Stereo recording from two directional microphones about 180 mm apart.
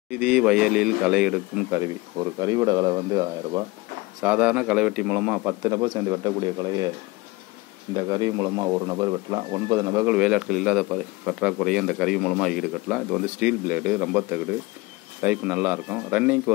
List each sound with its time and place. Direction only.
0.1 s speech: 5° right (ahead or behind)
2.4 s speech: 20° right (ahead or behind)
4.2 s a man's voice: 10° right (ahead or behind)
7.9 s speech: 20° right (ahead or behind)
10.1 s a man's voice: 5° right (ahead or behind)